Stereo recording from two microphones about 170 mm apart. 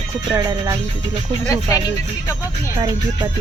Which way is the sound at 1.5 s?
20° left (ahead or behind).